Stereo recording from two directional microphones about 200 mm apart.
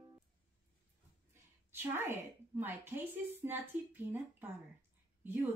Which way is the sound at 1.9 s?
10° right (ahead or behind).